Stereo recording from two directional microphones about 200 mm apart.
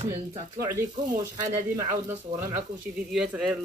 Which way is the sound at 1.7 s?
15° right (ahead or behind).